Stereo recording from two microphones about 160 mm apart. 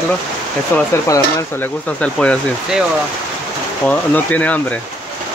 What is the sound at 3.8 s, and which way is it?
Speech, 10° left (ahead or behind).